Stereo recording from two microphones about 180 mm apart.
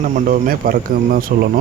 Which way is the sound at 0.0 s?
45° right (ahead or behind).